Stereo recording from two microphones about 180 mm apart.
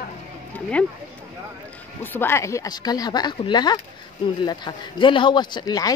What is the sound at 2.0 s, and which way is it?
Speech, 10° left (ahead or behind).